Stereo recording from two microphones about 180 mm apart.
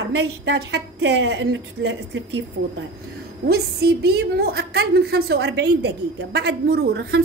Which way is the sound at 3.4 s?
65° right (ahead or behind).